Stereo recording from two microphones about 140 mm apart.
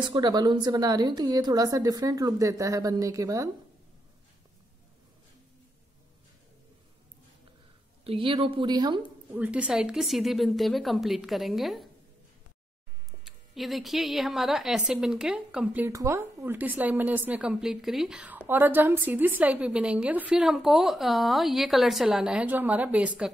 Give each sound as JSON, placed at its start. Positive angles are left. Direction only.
{"t": 0.0, "sound": "a woman's voice", "side_deg": -30}
{"t": 8.0, "sound": "a woman's voice", "side_deg": -40}
{"t": 9.0, "sound": "a woman's voice", "side_deg": -10}
{"t": 13.6, "sound": "a woman's voice", "side_deg": 0}
{"t": 15.9, "sound": "a woman's voice", "side_deg": -20}